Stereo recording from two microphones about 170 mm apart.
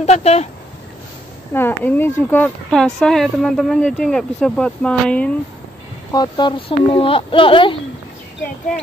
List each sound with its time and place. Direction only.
0.0 s speech: 40° left (ahead or behind)
1.5 s speech: 10° left (ahead or behind)
6.1 s speech: 25° left (ahead or behind)